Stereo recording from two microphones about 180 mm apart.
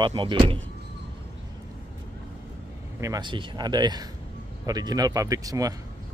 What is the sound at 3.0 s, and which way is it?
Speech, 20° right (ahead or behind).